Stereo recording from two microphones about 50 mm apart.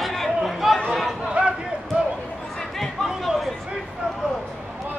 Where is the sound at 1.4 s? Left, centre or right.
Right.